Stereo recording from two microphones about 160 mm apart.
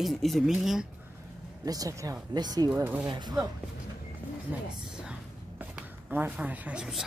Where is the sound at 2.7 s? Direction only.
10° right (ahead or behind).